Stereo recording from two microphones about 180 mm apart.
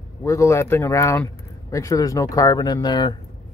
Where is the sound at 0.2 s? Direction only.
15° left (ahead or behind).